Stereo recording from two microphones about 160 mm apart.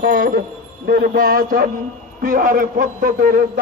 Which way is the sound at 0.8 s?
70° right (ahead or behind).